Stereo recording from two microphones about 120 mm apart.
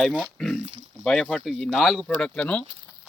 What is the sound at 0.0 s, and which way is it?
Speech, centre (ahead or behind).